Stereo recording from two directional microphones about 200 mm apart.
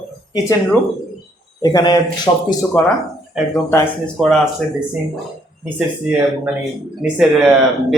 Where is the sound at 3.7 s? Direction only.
5° left (ahead or behind).